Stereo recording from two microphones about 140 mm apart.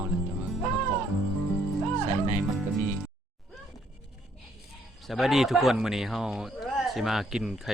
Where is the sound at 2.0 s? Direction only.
55° right (ahead or behind).